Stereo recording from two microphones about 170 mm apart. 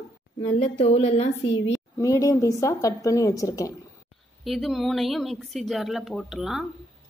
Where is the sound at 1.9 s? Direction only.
20° left (ahead or behind).